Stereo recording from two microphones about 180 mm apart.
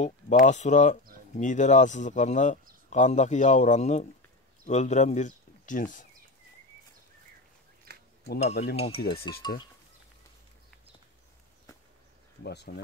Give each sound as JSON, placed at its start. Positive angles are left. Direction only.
{"t": 0.0, "sound": "speech", "side_deg": 40}
{"t": 7.8, "sound": "a sound", "side_deg": -55}
{"t": 8.4, "sound": "speech", "side_deg": 40}
{"t": 12.4, "sound": "speech", "side_deg": 65}